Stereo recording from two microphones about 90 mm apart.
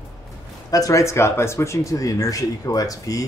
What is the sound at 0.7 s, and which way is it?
Speech, 40° left (ahead or behind).